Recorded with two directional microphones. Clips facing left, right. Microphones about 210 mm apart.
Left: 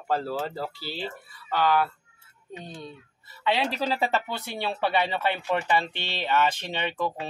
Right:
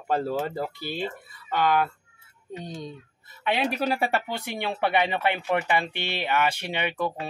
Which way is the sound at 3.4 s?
15° right (ahead or behind).